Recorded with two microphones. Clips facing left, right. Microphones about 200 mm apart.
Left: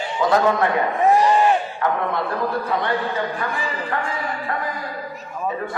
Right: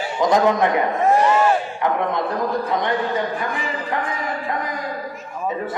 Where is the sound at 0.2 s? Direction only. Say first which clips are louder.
Right 1 dB; 15° right (ahead or behind).